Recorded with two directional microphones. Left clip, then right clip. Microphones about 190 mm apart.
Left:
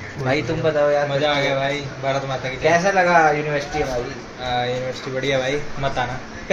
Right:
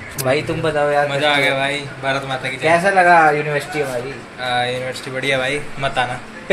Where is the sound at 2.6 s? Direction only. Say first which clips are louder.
Right 3 dB; 45° right (ahead or behind).